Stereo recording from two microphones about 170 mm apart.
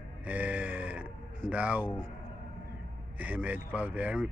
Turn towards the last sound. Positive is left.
turn(degrees=-10)  # may be behind; listen again after turning